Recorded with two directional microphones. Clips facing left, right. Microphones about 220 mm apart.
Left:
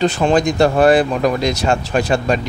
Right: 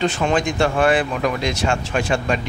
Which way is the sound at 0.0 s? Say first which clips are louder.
Left 5 dB; 35° left (ahead or behind).